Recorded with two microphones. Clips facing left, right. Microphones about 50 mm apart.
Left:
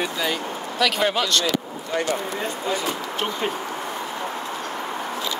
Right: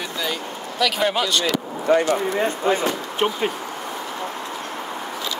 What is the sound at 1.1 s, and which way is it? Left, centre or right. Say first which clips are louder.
Speech: right 1 dB; centre.